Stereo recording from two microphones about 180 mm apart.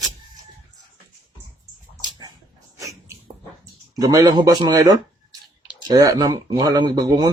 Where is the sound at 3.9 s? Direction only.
20° right (ahead or behind).